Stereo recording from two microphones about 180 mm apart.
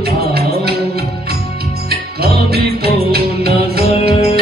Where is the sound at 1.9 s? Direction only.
60° right (ahead or behind).